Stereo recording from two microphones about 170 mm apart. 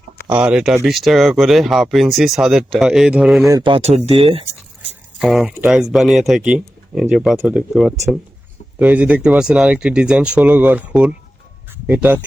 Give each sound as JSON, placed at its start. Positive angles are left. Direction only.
{"t": 0.3, "sound": "speech", "side_deg": -5}
{"t": 3.5, "sound": "speech", "side_deg": -30}
{"t": 5.2, "sound": "speech", "side_deg": -5}